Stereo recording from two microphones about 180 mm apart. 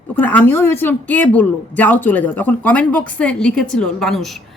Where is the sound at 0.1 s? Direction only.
10° left (ahead or behind).